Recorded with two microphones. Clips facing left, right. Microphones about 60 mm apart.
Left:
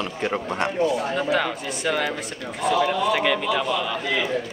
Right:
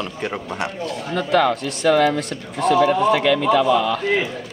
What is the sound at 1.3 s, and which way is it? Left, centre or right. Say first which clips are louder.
Speech: right 6 dB; right.